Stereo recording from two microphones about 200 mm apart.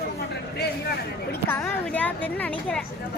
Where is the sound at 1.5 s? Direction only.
10° left (ahead or behind).